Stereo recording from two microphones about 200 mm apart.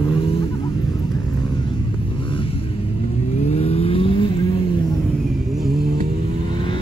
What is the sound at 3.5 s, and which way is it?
Vehicle, 30° left (ahead or behind).